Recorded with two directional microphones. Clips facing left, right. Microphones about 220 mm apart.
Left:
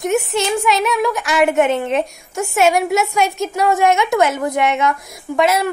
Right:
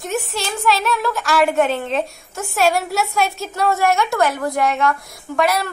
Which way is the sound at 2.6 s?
20° left (ahead or behind).